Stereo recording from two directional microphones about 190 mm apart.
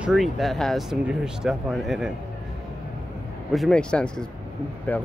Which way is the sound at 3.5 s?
Centre (ahead or behind).